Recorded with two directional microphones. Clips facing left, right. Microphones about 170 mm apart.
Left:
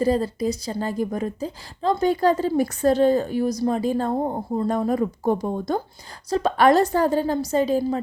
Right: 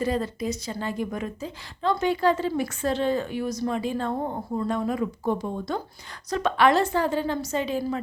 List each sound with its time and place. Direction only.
0.0 s a woman's voice: 35° left (ahead or behind)